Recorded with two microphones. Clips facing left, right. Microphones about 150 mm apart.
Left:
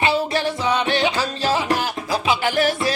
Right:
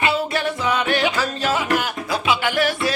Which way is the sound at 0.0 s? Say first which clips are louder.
Left 1 dB; 30° left (ahead or behind).